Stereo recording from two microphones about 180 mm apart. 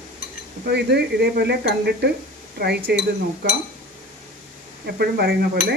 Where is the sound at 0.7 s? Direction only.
65° right (ahead or behind).